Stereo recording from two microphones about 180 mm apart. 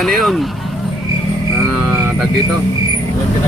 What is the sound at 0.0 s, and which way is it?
Speech, centre (ahead or behind).